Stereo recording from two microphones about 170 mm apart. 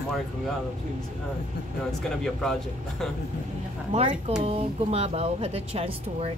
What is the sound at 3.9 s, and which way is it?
Speech, 40° right (ahead or behind).